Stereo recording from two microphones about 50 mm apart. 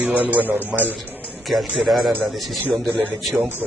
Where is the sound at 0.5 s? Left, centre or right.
Right.